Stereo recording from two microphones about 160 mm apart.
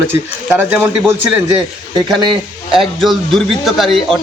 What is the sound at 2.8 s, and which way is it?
A man's voice, centre (ahead or behind).